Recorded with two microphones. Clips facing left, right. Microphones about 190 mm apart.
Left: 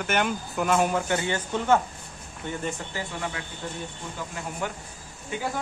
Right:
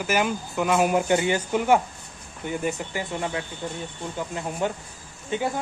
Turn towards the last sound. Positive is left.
turn(degrees=-25)  # may be behind; listen again after turning